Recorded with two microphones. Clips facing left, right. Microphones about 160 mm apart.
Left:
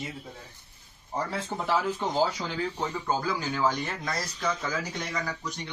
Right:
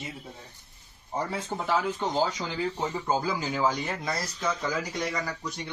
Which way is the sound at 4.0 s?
5° right (ahead or behind).